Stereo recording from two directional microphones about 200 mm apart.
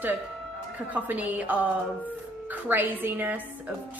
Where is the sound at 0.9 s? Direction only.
10° right (ahead or behind).